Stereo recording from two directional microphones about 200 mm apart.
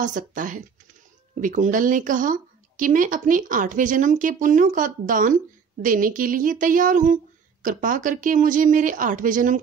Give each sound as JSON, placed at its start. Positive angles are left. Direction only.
{"t": 0.0, "sound": "speech", "side_deg": -40}